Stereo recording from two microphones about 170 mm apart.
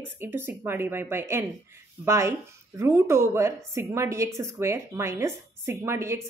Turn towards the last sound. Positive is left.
turn(degrees=-15)  # may be behind; listen again after turning